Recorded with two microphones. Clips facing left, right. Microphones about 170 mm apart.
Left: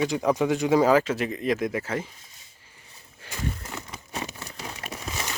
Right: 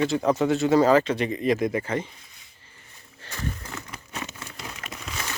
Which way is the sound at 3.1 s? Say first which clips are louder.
Left 1 dB; 10° left (ahead or behind).